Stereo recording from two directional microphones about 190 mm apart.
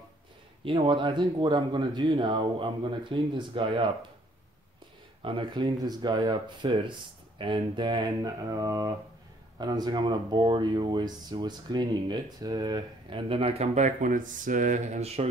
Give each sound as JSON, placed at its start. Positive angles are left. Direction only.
{"t": 0.7, "sound": "speech", "side_deg": -25}
{"t": 5.2, "sound": "speech", "side_deg": -25}